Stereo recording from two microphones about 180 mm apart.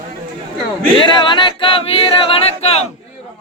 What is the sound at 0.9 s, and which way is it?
Choir, 25° left (ahead or behind).